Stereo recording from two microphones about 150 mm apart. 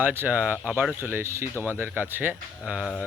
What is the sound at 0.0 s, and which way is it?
Speech, 15° right (ahead or behind).